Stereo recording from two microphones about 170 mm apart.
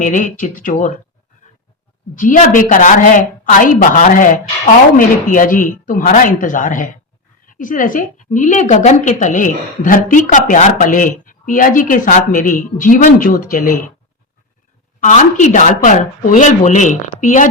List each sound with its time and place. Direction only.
0.0 s a woman's voice: 50° left (ahead or behind)
2.1 s a woman's voice: 50° left (ahead or behind)
15.0 s a woman's voice: 45° left (ahead or behind)